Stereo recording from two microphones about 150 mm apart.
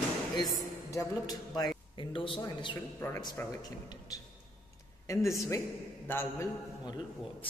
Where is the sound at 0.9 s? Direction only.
25° left (ahead or behind).